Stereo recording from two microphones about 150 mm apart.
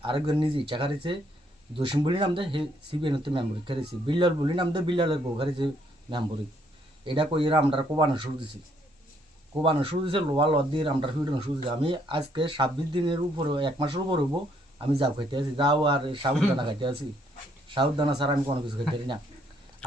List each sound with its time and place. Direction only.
0.0 s speech: 35° right (ahead or behind)
9.6 s speech: 35° right (ahead or behind)